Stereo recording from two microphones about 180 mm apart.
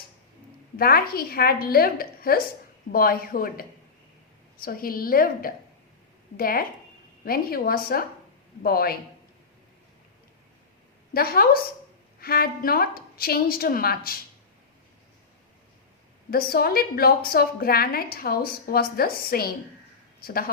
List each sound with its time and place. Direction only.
0.8 s a woman's voice: 55° left (ahead or behind)
11.1 s a woman's voice: 55° left (ahead or behind)
16.3 s a woman's voice: 55° left (ahead or behind)